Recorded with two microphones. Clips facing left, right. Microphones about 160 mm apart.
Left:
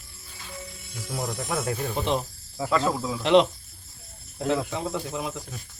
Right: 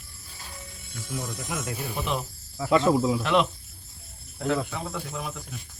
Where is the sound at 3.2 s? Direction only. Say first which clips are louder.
Left 5 dB; 25° left (ahead or behind).